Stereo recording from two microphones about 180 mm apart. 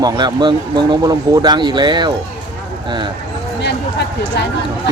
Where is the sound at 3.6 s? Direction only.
70° left (ahead or behind).